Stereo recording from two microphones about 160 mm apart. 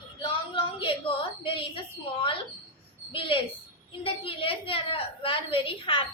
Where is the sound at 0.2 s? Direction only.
35° left (ahead or behind).